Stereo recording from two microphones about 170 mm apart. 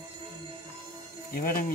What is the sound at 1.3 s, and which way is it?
Speech, 60° left (ahead or behind).